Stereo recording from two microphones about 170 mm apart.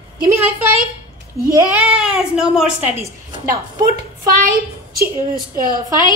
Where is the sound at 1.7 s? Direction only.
5° right (ahead or behind).